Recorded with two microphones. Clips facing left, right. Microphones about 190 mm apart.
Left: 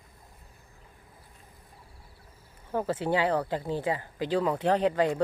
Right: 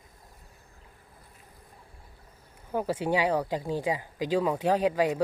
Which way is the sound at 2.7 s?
10° right (ahead or behind).